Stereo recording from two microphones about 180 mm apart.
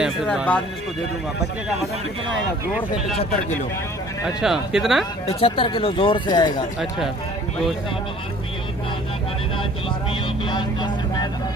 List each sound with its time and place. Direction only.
0.0 s speech: 5° right (ahead or behind)
4.4 s speech: 5° right (ahead or behind)
5.2 s speech: 30° left (ahead or behind)
10.1 s speech: 25° left (ahead or behind)